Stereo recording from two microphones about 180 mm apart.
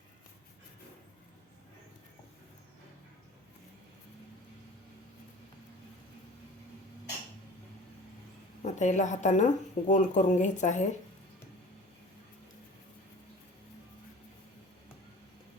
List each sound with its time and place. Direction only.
8.6 s a woman's voice: 40° left (ahead or behind)